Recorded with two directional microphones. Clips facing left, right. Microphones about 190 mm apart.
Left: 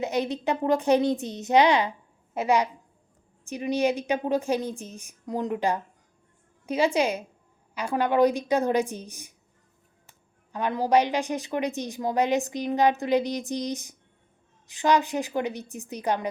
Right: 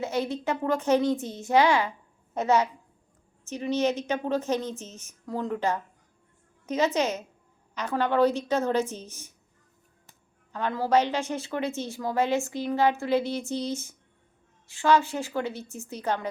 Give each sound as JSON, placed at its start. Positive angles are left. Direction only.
{"t": 0.0, "sound": "a woman's voice", "side_deg": 20}